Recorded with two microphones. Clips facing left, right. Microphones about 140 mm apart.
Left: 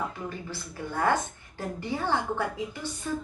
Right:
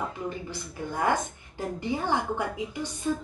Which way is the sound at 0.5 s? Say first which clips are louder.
Right 1 dB; 15° right (ahead or behind).